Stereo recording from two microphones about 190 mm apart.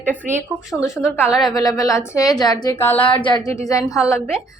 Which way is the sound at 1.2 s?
Centre (ahead or behind).